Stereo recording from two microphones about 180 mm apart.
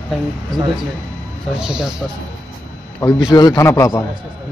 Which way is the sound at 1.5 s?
5° right (ahead or behind).